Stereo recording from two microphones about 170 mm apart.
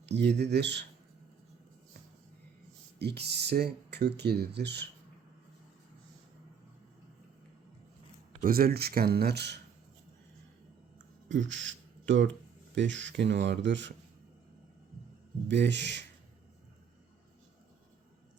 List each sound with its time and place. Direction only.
0.0 s speech: 85° right
3.0 s speech: 75° right (ahead or behind)
8.4 s speech: 60° right (ahead or behind); by 9.6 s 75° right (ahead or behind)
10.9 s a sound: 90° right
12.7 s speech: 90° right
15.4 s speech: 90° right